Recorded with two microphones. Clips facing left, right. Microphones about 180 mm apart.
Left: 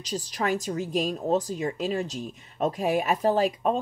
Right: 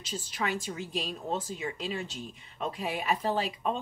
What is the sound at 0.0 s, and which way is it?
Speech, 40° left (ahead or behind).